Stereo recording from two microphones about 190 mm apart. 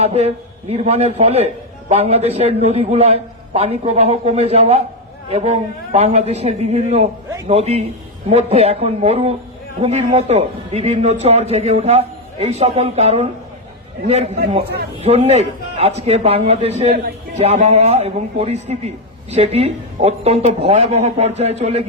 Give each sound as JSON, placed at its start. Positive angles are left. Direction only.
{"t": 0.0, "sound": "a man's voice", "side_deg": -35}